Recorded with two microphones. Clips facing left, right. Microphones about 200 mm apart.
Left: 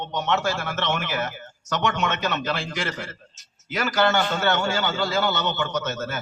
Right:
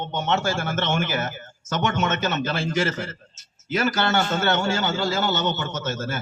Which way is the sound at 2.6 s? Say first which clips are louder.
Right 6 dB; 45° right (ahead or behind).